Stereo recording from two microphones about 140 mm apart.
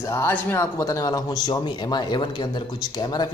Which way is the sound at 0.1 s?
15° left (ahead or behind).